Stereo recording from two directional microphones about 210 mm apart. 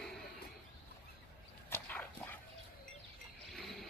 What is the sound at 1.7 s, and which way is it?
Dog, 10° left (ahead or behind).